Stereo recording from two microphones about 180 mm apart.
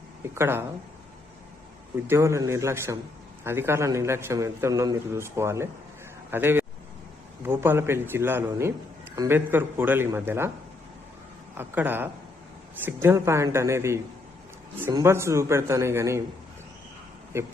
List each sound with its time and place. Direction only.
0.3 s a man's voice: 15° right (ahead or behind)
2.0 s a man's voice: 15° right (ahead or behind)
11.5 s a man's voice: 10° right (ahead or behind)
17.3 s a man's voice: 15° right (ahead or behind)